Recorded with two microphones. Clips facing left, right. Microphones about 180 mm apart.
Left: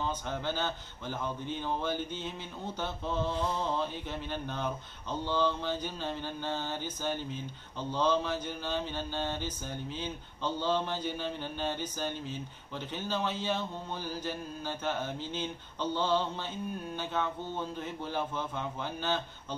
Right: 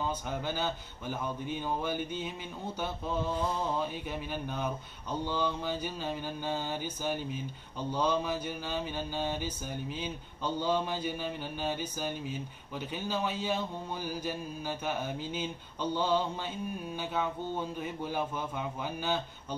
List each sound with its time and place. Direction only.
0.0 s mantra: 10° right (ahead or behind)